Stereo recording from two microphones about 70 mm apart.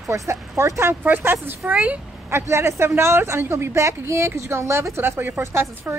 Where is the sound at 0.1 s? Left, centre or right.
Right.